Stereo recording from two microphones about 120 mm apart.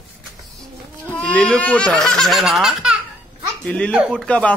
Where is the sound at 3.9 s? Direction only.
10° right (ahead or behind).